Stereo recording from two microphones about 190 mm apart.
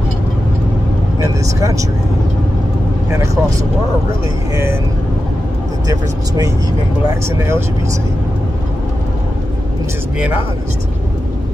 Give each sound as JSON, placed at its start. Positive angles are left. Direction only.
{"t": 1.2, "sound": "speech", "side_deg": -15}
{"t": 3.1, "sound": "speech", "side_deg": -15}
{"t": 5.9, "sound": "speech", "side_deg": -20}